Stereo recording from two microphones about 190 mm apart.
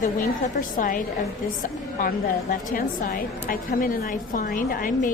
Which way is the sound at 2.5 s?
45° left (ahead or behind).